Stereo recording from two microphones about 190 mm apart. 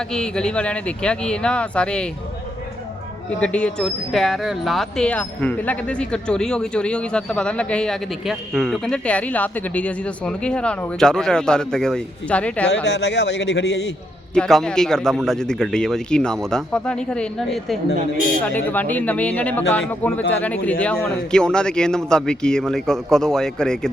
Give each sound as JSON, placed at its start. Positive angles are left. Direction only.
{"t": 0.1, "sound": "speech", "side_deg": 5}
{"t": 3.2, "sound": "speech", "side_deg": 5}
{"t": 12.8, "sound": "a man's voice", "side_deg": 65}
{"t": 14.3, "sound": "speech", "side_deg": 5}